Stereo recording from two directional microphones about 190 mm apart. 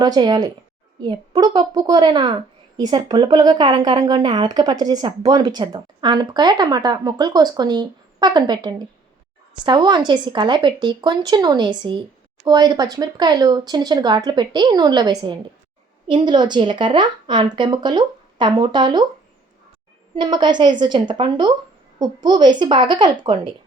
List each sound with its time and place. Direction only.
0.0 s speech: 20° right (ahead or behind)
20.1 s speech: 25° right (ahead or behind)